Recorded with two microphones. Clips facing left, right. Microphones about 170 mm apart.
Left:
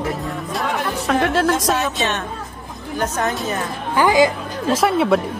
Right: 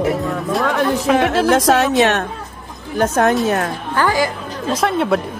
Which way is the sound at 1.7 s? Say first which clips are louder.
Right 7 dB; 70° right (ahead or behind).